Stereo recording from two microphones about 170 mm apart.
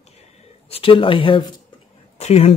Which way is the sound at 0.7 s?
35° left (ahead or behind).